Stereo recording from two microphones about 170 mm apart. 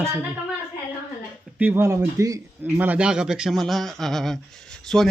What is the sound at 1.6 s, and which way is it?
Speech, 15° right (ahead or behind).